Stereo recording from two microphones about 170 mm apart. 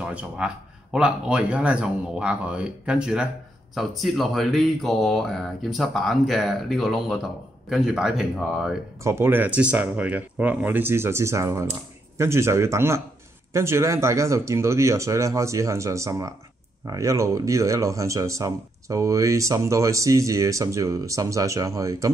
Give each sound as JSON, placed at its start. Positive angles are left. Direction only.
{"t": 0.0, "sound": "a man's voice", "side_deg": -5}
{"t": 9.0, "sound": "speech", "side_deg": -15}